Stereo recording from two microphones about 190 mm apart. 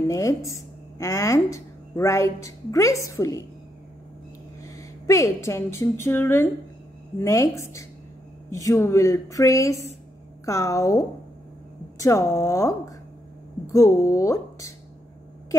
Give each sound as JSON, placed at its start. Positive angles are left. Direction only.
{"t": 0.1, "sound": "a woman's voice", "side_deg": 15}
{"t": 4.6, "sound": "a woman's voice", "side_deg": 15}